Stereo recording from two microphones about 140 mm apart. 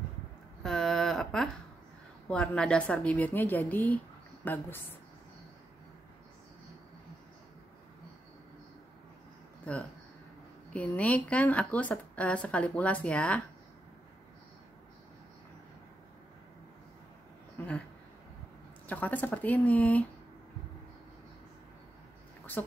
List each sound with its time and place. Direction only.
0.7 s a sound: 5° left (ahead or behind)
2.2 s speech: 5° left (ahead or behind)
10.7 s speech: 10° left (ahead or behind)
17.6 s a sound: 15° left (ahead or behind)
18.9 s speech: 10° left (ahead or behind)
22.6 s speech: 15° left (ahead or behind)